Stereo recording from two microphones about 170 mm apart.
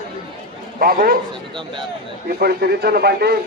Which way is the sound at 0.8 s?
60° right (ahead or behind).